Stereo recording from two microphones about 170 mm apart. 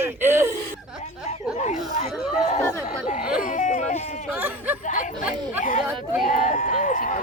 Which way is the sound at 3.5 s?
45° left (ahead or behind).